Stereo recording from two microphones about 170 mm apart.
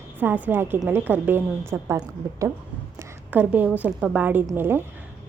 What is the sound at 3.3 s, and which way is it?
A woman's voice, 10° right (ahead or behind).